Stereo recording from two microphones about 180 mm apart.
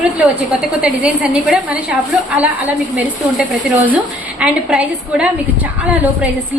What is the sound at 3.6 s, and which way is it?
A woman's voice, 10° right (ahead or behind).